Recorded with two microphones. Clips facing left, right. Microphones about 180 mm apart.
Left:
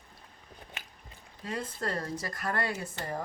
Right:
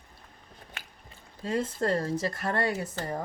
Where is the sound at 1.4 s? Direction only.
25° right (ahead or behind).